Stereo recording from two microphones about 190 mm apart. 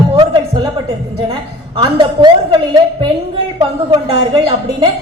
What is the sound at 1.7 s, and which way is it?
A woman's voice, 25° right (ahead or behind).